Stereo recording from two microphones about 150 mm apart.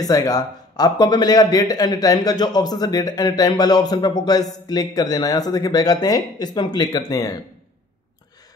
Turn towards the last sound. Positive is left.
turn(degrees=25)  # may be behind; listen again after turning